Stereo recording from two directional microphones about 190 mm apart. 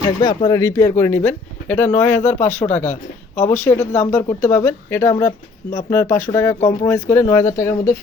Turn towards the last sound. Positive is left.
turn(degrees=15)  # may be behind; listen again after turning